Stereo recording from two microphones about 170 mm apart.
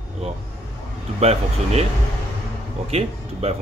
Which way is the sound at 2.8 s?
40° right (ahead or behind).